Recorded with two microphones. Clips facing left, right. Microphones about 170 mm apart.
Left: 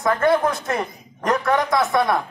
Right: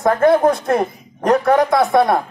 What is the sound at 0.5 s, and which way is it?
Speech, 55° right (ahead or behind).